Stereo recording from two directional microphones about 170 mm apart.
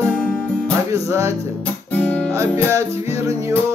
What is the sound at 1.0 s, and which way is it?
Music, 15° right (ahead or behind).